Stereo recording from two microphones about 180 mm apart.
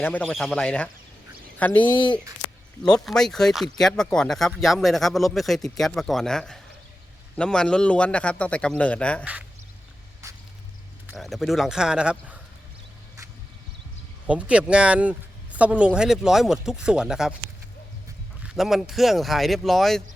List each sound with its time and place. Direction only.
0.0 s a man's voice: 5° left (ahead or behind)
10.2 s a sound: 15° right (ahead or behind)
11.1 s speech: centre (ahead or behind)
14.3 s speech: 5° right (ahead or behind)
18.4 s speech: centre (ahead or behind)